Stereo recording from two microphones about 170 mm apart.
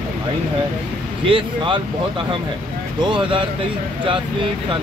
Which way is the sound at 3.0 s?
30° right (ahead or behind).